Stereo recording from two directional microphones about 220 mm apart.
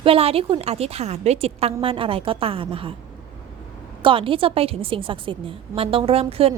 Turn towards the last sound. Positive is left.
turn(degrees=-25)  # may be behind; listen again after turning